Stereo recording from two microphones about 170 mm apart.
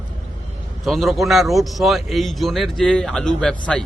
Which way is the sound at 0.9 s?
Centre (ahead or behind).